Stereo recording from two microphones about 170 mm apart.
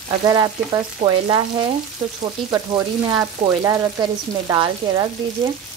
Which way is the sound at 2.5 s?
20° right (ahead or behind).